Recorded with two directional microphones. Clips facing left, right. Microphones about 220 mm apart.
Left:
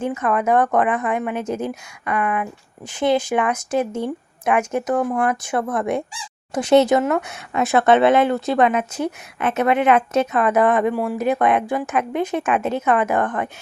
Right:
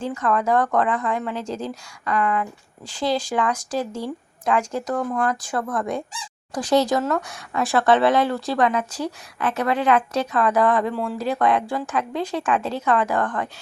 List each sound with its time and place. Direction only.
0.0 s speech: 20° left (ahead or behind)